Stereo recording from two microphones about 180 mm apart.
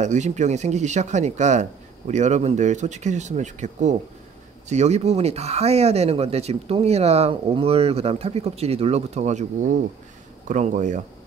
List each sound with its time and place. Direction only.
0.0 s speech: 40° right (ahead or behind)